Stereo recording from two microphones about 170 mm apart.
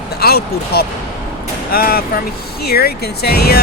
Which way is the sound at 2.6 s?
70° left (ahead or behind).